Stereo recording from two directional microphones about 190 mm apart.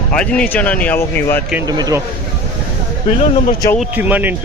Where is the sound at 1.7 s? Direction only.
20° right (ahead or behind).